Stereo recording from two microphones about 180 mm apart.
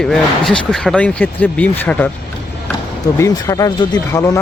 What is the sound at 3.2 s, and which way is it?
Speech, 20° left (ahead or behind).